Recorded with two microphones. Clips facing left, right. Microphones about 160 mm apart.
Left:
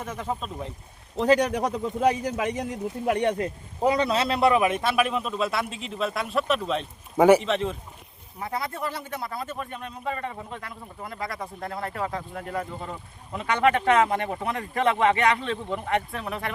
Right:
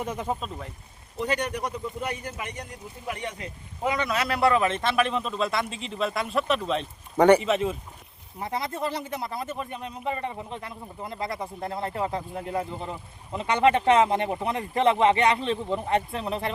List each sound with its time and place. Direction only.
0.0 s speech: 15° right (ahead or behind)
1.2 s a man's voice: 90° left; by 3.5 s 55° left (ahead or behind)
3.8 s a man's voice: 35° left (ahead or behind); by 7.8 s 5° right (ahead or behind)
8.4 s speech: 20° right (ahead or behind)